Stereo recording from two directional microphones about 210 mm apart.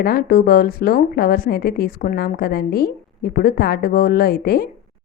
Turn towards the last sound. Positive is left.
turn(degrees=45)  # may be behind; listen again after turning